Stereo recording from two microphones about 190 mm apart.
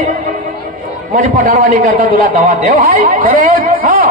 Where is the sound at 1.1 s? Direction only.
40° right (ahead or behind).